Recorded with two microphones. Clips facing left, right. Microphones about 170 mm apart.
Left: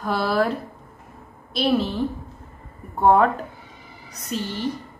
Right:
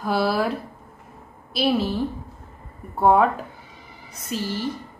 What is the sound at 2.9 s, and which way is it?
A woman's voice, 5° right (ahead or behind).